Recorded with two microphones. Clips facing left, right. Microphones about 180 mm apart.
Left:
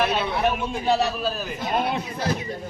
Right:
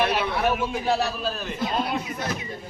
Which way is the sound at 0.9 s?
Centre (ahead or behind).